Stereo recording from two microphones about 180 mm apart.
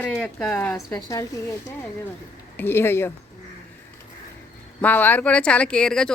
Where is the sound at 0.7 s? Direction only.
20° left (ahead or behind).